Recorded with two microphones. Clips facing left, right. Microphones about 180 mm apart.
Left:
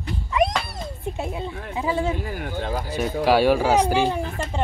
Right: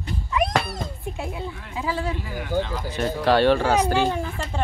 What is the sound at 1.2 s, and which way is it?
Speech, 20° left (ahead or behind).